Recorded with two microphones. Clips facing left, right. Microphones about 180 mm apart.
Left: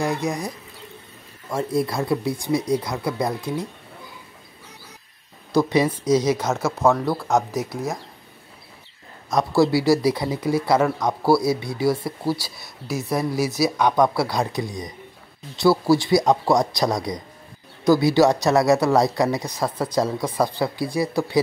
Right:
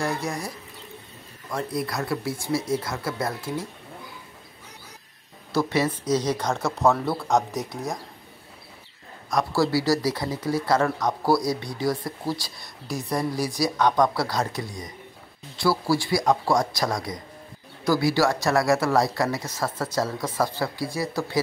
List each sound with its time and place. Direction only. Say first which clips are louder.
0.0 s speech: left 4 dB; 15° left (ahead or behind)
1.5 s a man's voice: left 5 dB; 25° left (ahead or behind)
5.5 s speech: left 4 dB; 15° left (ahead or behind)
9.3 s a man's voice: left 4 dB; 20° left (ahead or behind)